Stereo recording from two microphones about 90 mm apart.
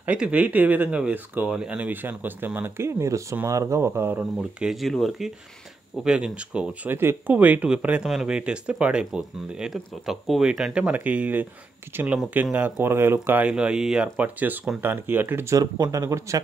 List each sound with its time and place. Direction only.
0.0 s speech: 15° right (ahead or behind)
4.4 s speech: 5° right (ahead or behind)
6.0 s speech: 10° right (ahead or behind)
6.9 s speech: 25° right (ahead or behind)
13.5 s speech: 10° right (ahead or behind)
15.5 s speech: 40° right (ahead or behind)